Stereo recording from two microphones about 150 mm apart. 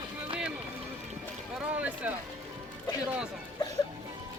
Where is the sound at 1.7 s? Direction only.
10° right (ahead or behind).